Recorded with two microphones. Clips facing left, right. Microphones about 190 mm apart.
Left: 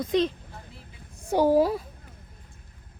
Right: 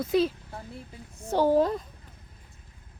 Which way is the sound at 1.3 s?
10° left (ahead or behind).